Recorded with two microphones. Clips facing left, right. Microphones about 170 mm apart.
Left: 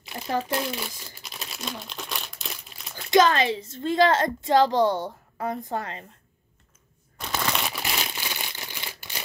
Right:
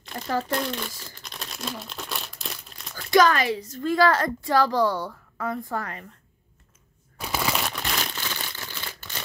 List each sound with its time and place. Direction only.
0.0 s crumpling: 5° left (ahead or behind)
3.1 s a woman's voice: 25° left (ahead or behind)
7.2 s crumpling: 5° right (ahead or behind); by 9.2 s 15° left (ahead or behind)